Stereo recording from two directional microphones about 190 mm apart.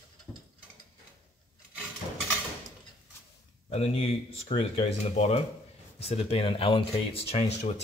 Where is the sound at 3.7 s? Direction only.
30° left (ahead or behind).